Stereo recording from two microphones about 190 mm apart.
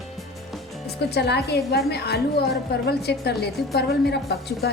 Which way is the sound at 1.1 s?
60° left (ahead or behind).